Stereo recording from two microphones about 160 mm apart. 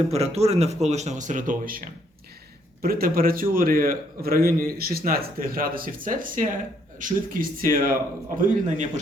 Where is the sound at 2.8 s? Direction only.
65° right (ahead or behind).